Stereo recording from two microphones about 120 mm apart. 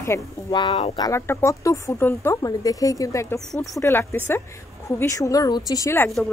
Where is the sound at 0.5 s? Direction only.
40° left (ahead or behind).